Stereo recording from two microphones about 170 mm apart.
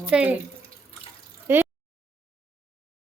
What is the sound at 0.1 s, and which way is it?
Speech, 5° right (ahead or behind).